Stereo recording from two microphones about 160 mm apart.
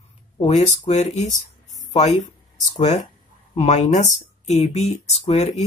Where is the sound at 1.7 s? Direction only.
50° left (ahead or behind).